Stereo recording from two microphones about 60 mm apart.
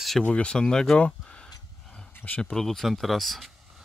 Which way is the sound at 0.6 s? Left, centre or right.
Centre.